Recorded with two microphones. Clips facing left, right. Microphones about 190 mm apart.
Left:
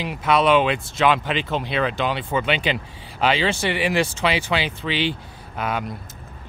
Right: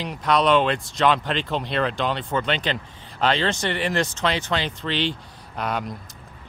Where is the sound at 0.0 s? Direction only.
5° left (ahead or behind).